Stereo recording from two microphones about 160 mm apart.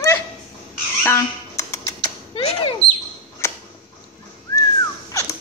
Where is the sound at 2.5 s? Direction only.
35° left (ahead or behind).